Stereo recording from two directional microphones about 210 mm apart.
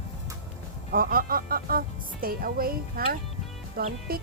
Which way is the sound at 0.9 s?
45° right (ahead or behind).